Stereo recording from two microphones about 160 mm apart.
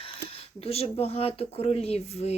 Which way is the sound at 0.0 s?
35° left (ahead or behind).